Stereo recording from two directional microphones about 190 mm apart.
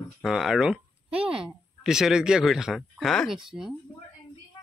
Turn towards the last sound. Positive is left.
turn(degrees=0)  # may be behind; listen again after turning